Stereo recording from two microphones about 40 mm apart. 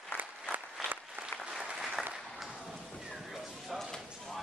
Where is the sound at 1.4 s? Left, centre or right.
Centre.